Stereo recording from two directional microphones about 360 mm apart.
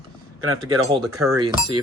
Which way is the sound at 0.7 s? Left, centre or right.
Centre.